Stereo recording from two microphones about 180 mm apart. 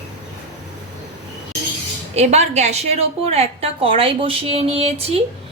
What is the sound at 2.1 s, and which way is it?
A woman's voice, 40° right (ahead or behind).